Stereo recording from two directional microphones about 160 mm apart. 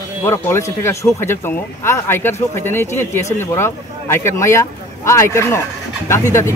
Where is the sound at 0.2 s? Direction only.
15° left (ahead or behind).